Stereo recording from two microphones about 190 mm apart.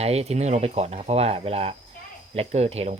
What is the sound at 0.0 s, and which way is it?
Speech, 35° right (ahead or behind).